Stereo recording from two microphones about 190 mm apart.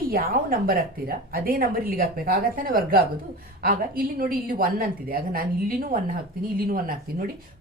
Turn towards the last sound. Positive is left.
turn(degrees=-50)  # may be behind; listen again after turning